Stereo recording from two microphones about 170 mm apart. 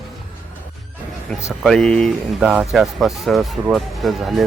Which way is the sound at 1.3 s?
10° left (ahead or behind).